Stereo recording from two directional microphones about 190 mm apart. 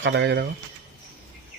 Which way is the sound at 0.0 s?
65° right (ahead or behind).